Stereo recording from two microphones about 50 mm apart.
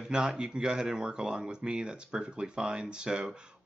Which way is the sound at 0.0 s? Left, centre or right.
Centre.